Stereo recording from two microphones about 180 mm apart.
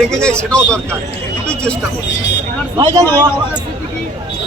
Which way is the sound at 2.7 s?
20° right (ahead or behind).